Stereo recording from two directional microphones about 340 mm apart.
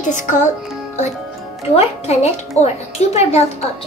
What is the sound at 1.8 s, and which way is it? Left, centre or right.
Speech, centre.